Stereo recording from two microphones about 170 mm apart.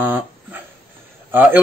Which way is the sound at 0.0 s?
10° right (ahead or behind).